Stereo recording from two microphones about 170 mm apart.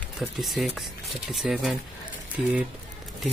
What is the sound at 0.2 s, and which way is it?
Speech, centre (ahead or behind).